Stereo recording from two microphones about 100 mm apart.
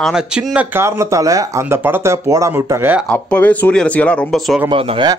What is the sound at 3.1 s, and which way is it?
Speech, 15° left (ahead or behind).